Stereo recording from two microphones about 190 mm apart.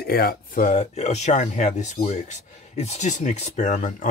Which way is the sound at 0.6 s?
35° left (ahead or behind).